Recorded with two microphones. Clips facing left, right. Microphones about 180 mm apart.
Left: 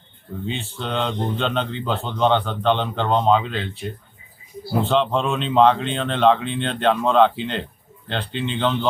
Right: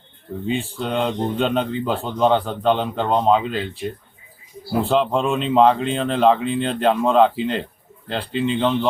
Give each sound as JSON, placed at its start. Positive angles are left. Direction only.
{"t": 0.5, "sound": "speech", "side_deg": -10}
{"t": 4.8, "sound": "speech", "side_deg": -5}